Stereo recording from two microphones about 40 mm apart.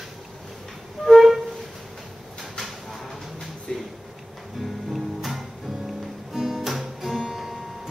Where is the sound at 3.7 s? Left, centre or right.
Left.